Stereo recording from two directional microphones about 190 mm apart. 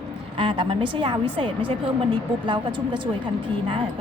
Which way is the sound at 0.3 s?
25° right (ahead or behind).